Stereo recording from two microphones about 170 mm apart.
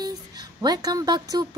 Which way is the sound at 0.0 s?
25° right (ahead or behind).